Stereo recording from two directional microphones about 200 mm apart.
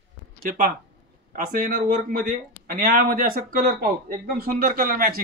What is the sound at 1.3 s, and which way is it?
Speech, 45° right (ahead or behind).